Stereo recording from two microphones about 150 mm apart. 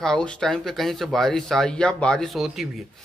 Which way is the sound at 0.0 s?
5° left (ahead or behind).